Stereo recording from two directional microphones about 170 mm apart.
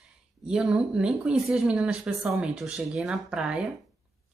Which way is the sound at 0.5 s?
5° right (ahead or behind).